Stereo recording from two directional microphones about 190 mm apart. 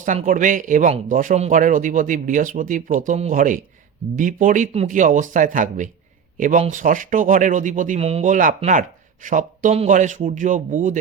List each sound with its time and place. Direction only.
0.0 s a man's voice: 40° right (ahead or behind)